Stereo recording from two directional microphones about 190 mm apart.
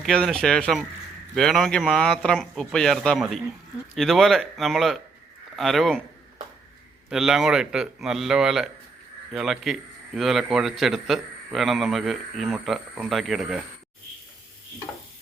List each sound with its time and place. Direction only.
0.0 s a man's voice: 5° left (ahead or behind)
7.1 s a man's voice: centre (ahead or behind)